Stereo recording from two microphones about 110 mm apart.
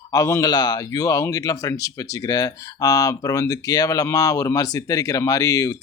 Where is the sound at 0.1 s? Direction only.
30° left (ahead or behind).